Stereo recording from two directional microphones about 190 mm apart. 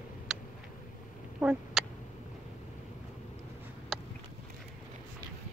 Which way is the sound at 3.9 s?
Centre (ahead or behind).